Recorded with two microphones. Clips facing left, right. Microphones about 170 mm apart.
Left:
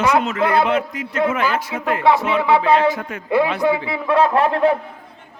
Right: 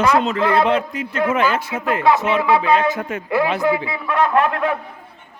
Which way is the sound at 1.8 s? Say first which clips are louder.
Even; 25° left (ahead or behind).